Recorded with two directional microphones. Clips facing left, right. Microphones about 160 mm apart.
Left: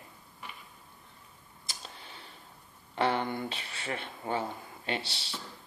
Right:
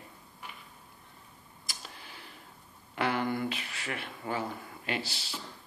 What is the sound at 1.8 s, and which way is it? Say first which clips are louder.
Tick: left 1 dB; 30° left (ahead or behind).